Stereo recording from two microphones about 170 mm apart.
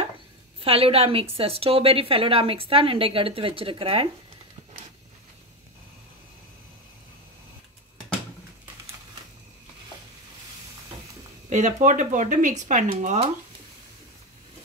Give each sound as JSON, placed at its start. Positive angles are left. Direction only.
{"t": 0.6, "sound": "a woman's voice", "side_deg": -35}
{"t": 11.4, "sound": "a woman's voice", "side_deg": -45}